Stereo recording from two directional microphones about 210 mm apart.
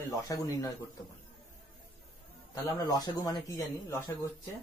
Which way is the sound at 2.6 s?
20° left (ahead or behind).